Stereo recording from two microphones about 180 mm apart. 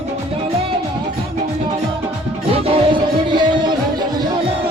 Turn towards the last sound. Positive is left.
turn(degrees=-25)  # may be behind; listen again after turning